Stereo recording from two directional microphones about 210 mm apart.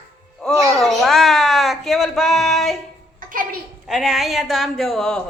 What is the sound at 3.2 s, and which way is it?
Music, 40° right (ahead or behind).